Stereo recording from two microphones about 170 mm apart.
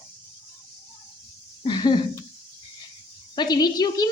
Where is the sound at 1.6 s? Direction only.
25° left (ahead or behind).